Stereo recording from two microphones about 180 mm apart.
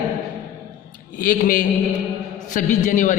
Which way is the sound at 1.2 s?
50° left (ahead or behind).